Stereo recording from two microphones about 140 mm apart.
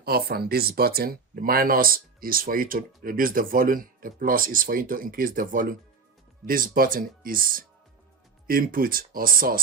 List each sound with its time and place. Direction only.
0.0 s speech: 90° right